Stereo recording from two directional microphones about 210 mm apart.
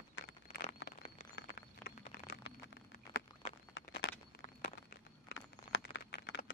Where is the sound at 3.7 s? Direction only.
60° left (ahead or behind).